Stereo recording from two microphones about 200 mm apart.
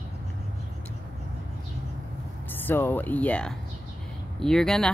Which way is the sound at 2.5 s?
10° left (ahead or behind).